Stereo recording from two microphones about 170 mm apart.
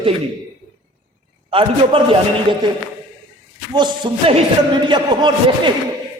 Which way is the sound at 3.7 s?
25° right (ahead or behind).